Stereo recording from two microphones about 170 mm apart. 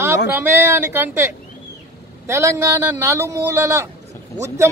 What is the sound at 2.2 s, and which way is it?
A man's voice, 15° right (ahead or behind).